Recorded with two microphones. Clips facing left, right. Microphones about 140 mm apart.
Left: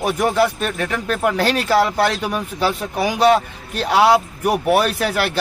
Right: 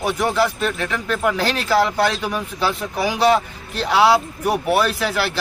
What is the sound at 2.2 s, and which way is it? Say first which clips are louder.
Speech: left 2 dB; 10° left (ahead or behind).